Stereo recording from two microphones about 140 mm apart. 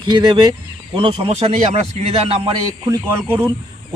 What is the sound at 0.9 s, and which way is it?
Speech, 40° right (ahead or behind).